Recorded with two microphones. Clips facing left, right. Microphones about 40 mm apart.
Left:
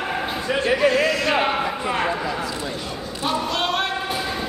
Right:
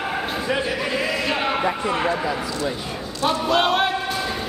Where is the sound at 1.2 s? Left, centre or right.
Centre.